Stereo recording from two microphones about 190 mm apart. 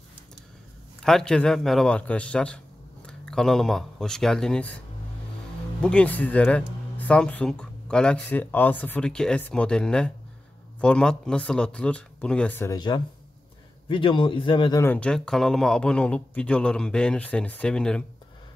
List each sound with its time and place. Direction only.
1.0 s speech: 5° left (ahead or behind)
12.7 s speech: 25° left (ahead or behind); by 18.0 s 5° left (ahead or behind)